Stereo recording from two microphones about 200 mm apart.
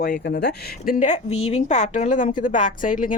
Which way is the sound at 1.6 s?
35° left (ahead or behind).